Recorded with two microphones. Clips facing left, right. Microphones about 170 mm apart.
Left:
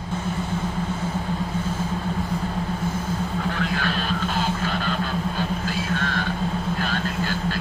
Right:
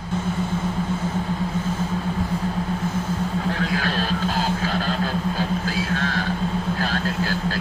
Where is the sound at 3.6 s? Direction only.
40° right (ahead or behind).